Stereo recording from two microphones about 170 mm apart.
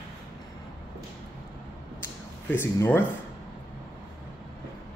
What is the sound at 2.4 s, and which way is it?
Speech, 10° left (ahead or behind).